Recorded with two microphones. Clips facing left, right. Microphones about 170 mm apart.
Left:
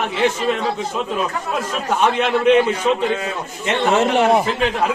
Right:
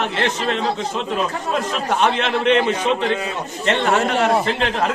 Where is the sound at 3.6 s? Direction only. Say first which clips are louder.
Left 1 dB; 15° left (ahead or behind).